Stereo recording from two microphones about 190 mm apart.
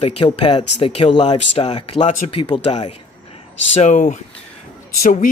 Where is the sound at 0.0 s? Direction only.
30° left (ahead or behind).